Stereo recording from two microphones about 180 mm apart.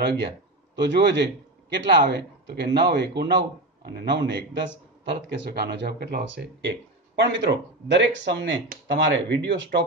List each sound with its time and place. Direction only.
0.7 s speech: 75° right (ahead or behind)